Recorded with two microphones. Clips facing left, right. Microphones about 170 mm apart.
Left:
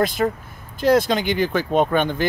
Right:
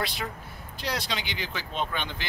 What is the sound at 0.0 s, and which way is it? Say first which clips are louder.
Speech: left 13 dB; 45° left (ahead or behind).